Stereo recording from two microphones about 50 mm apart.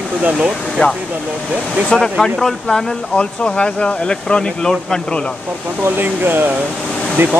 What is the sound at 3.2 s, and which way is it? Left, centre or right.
Speech, centre.